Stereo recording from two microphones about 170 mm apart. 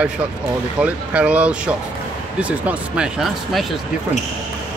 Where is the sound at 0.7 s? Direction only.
10° right (ahead or behind).